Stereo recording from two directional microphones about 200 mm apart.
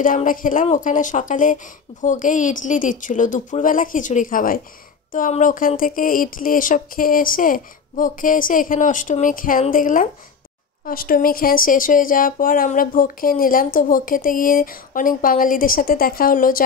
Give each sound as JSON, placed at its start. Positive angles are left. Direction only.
{"t": 0.0, "sound": "speech", "side_deg": 40}